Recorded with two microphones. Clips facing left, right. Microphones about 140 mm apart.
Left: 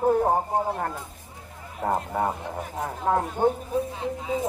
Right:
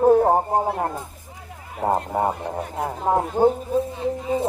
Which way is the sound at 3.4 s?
40° right (ahead or behind).